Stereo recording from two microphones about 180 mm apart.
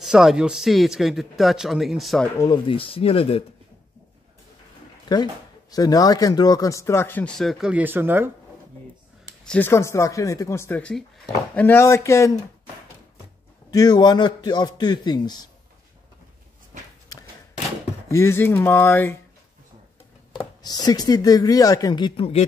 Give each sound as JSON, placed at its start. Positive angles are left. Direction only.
{"t": 0.0, "sound": "speech", "side_deg": -5}
{"t": 2.4, "sound": "speech", "side_deg": 25}
{"t": 5.0, "sound": "speech", "side_deg": 25}
{"t": 9.4, "sound": "speech", "side_deg": 10}
{"t": 13.7, "sound": "speech", "side_deg": 20}
{"t": 18.0, "sound": "speech", "side_deg": 15}
{"t": 20.6, "sound": "speech", "side_deg": 20}